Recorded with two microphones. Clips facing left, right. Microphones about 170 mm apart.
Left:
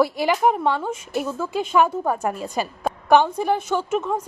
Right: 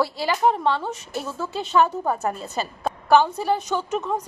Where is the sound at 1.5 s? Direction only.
10° left (ahead or behind).